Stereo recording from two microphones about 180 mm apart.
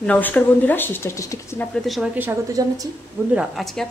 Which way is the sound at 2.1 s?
15° right (ahead or behind).